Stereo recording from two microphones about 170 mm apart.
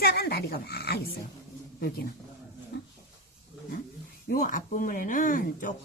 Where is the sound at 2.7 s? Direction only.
75° left (ahead or behind).